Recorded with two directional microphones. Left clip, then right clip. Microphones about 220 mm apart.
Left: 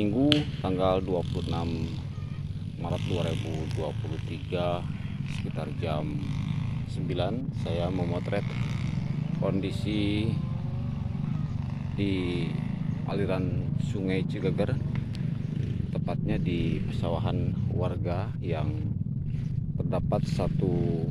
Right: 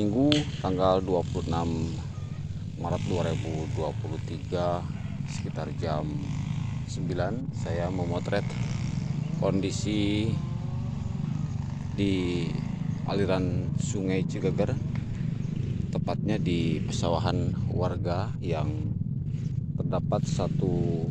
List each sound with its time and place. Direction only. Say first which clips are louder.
0.0 s finger snapping: right 1 dB; 10° right (ahead or behind)
0.7 s speech: right 2 dB; 5° right (ahead or behind)
2.9 s speech: right 2 dB; 5° right (ahead or behind)
4.5 s speech: right 1 dB; 5° right (ahead or behind)
7.1 s speech: even; 5° left (ahead or behind)
8.1 s speech: right 2 dB; 10° right (ahead or behind)
12.0 s speech: right 2 dB; 15° right (ahead or behind)
15.9 s speech: right 3 dB; 15° right (ahead or behind)
17.7 s speech: right 3 dB; 5° right (ahead or behind)
19.9 s speech: even; 5° left (ahead or behind)